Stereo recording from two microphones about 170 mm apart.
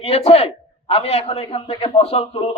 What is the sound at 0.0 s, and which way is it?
Speech, 35° left (ahead or behind).